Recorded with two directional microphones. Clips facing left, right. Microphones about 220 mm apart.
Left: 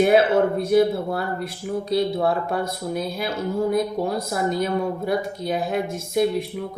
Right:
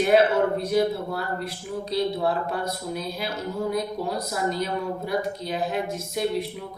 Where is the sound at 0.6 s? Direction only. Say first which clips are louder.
Left 5 dB; 50° left (ahead or behind).